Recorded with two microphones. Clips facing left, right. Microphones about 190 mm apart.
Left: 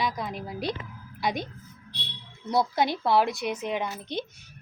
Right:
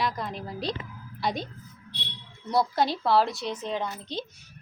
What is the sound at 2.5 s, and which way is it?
Speech, 20° left (ahead or behind).